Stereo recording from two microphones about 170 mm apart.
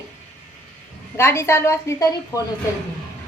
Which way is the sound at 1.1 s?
15° left (ahead or behind).